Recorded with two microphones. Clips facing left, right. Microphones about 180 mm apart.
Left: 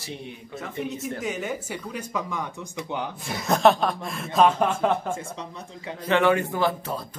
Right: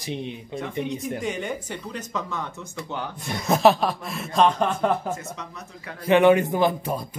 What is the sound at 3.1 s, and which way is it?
Speech, centre (ahead or behind).